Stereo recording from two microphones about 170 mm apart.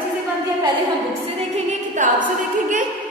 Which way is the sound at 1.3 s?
45° right (ahead or behind).